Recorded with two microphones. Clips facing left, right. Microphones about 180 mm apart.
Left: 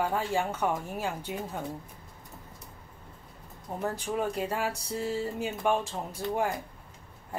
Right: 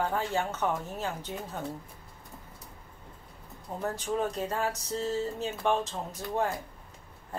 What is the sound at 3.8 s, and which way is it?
A woman's voice, 10° left (ahead or behind).